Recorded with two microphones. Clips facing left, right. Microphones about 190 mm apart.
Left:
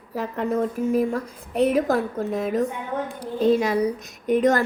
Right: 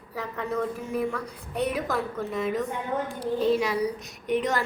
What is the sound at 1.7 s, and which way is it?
A woman's voice, 45° left (ahead or behind).